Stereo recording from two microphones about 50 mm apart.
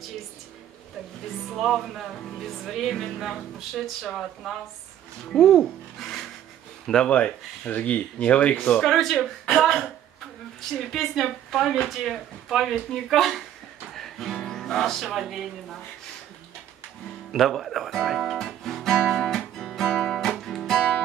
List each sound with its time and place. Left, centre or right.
1.6 s music: centre
5.3 s speech: centre
6.9 s speech: centre
7.2 s speech: left
8.7 s music: centre
10.6 s music: centre
15.0 s music: centre
17.4 s guitar: centre